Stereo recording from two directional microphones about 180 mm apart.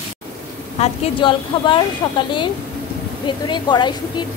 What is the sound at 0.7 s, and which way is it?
A woman's voice, 35° left (ahead or behind).